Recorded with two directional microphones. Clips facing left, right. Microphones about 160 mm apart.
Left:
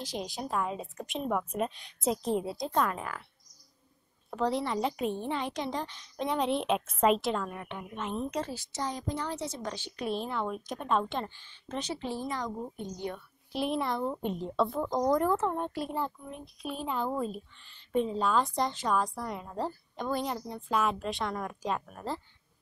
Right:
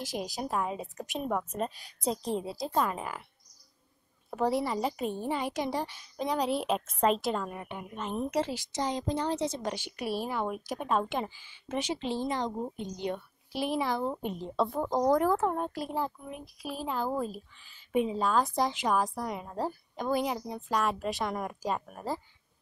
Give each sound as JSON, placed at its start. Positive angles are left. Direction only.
{"t": 0.0, "sound": "a woman's voice", "side_deg": -5}
{"t": 4.3, "sound": "a woman's voice", "side_deg": -10}
{"t": 8.7, "sound": "a woman's voice", "side_deg": -20}
{"t": 12.0, "sound": "a woman's voice", "side_deg": -20}
{"t": 13.5, "sound": "a woman's voice", "side_deg": 0}